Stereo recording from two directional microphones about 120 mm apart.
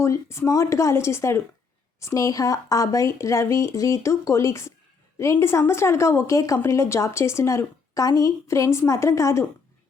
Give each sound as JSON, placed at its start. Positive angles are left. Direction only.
{"t": 0.0, "sound": "speech", "side_deg": 25}